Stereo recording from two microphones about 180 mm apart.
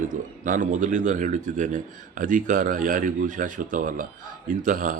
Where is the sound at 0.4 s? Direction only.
45° right (ahead or behind).